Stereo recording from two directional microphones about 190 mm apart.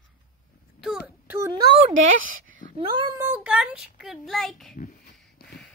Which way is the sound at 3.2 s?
10° right (ahead or behind).